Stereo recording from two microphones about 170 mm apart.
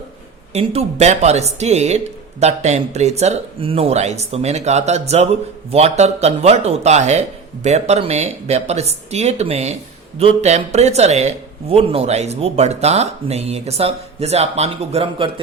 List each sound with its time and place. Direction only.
0.5 s speech: 40° right (ahead or behind)